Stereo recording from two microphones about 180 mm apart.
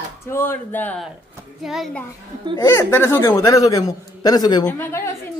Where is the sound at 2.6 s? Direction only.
15° left (ahead or behind).